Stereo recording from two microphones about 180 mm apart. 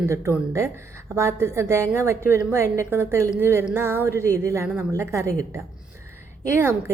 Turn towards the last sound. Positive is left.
turn(degrees=-15)  # may be behind; listen again after turning